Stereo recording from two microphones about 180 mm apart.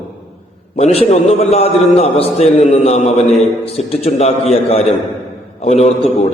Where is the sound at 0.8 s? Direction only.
35° left (ahead or behind).